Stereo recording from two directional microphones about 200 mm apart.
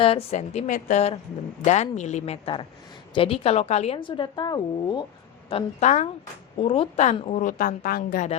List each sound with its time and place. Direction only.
0.0 s a woman's voice: 30° left (ahead or behind)
5.5 s a woman's voice: 30° left (ahead or behind)